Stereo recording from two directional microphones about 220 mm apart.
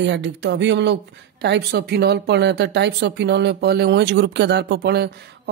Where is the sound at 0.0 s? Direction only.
55° right (ahead or behind).